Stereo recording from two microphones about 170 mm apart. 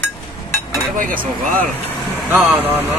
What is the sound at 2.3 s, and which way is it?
Speech, 10° right (ahead or behind).